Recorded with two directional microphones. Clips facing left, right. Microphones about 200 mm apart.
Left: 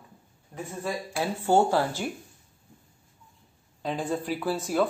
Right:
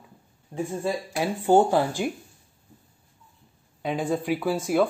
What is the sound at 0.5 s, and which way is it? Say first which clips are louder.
Speech: right 5 dB; 20° right (ahead or behind).